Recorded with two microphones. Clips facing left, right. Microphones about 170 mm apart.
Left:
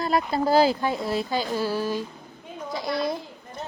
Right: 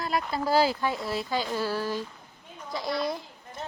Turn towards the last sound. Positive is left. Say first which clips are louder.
# left 3 dB
turn(degrees=20)  # may be behind; listen again after turning